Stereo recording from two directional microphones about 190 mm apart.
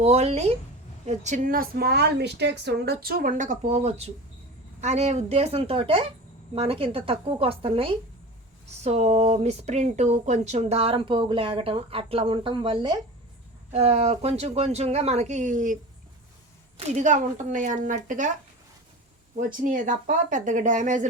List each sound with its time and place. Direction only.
0.0 s a woman's voice: 35° right (ahead or behind)
16.9 s a woman's voice: 40° right (ahead or behind)
19.5 s a woman's voice: 45° right (ahead or behind)